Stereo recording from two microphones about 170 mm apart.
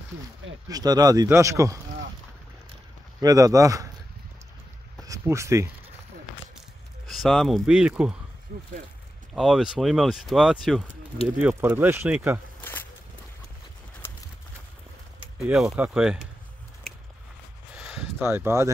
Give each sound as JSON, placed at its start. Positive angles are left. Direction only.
{"t": 0.7, "sound": "speech", "side_deg": -20}
{"t": 3.2, "sound": "speech", "side_deg": -20}
{"t": 5.0, "sound": "speech", "side_deg": -20}
{"t": 7.1, "sound": "speech", "side_deg": 0}
{"t": 9.3, "sound": "speech", "side_deg": 0}
{"t": 11.3, "sound": "speech", "side_deg": -15}
{"t": 15.4, "sound": "speech", "side_deg": -5}
{"t": 17.7, "sound": "a sound", "side_deg": -5}
{"t": 18.2, "sound": "speech", "side_deg": -15}